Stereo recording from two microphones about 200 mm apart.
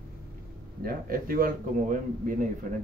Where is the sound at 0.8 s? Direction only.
45° right (ahead or behind).